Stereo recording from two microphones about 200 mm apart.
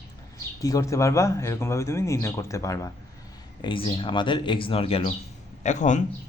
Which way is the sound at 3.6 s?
25° left (ahead or behind).